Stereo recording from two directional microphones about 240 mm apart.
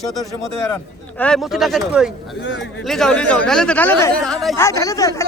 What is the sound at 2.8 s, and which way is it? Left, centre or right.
Speech, centre.